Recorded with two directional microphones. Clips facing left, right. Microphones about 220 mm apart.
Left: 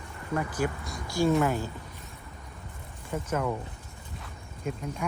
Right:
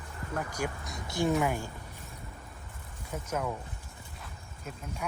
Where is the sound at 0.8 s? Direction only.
20° right (ahead or behind).